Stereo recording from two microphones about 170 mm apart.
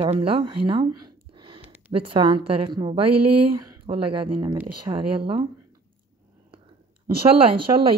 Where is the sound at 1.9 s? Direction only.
30° right (ahead or behind).